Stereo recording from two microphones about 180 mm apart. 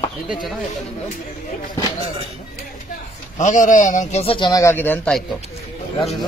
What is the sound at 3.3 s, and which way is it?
A man's voice, 45° left (ahead or behind).